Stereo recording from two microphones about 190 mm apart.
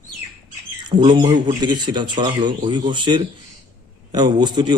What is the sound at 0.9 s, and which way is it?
Speech, 25° right (ahead or behind).